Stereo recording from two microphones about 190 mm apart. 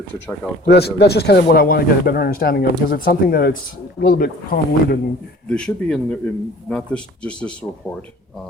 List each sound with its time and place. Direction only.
0.6 s a man's voice: 60° left (ahead or behind)
5.5 s speech: 5° left (ahead or behind)